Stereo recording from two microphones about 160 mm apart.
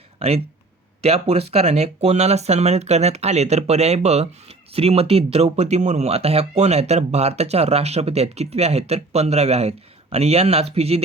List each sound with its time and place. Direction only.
0.2 s speech: 40° right (ahead or behind)